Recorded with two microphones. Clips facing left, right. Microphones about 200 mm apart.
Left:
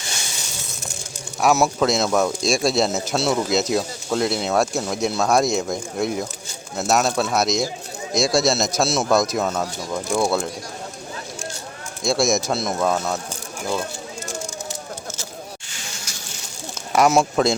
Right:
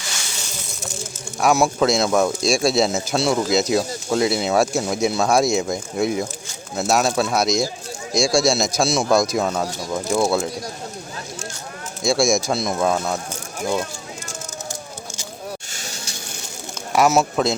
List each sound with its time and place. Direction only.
1.4 s speech: centre (ahead or behind)
12.0 s speech: centre (ahead or behind)
15.7 s a sound: 40° right (ahead or behind)
16.9 s speech: 5° right (ahead or behind)